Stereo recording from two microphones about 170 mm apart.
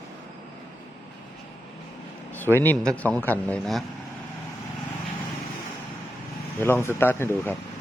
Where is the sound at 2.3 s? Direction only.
10° left (ahead or behind).